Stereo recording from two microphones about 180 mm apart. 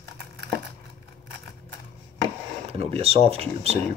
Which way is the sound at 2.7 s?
35° right (ahead or behind).